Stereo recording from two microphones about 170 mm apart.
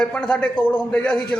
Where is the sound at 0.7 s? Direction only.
10° left (ahead or behind).